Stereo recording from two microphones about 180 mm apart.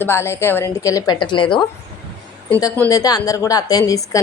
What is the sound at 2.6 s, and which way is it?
A woman's voice, 15° left (ahead or behind).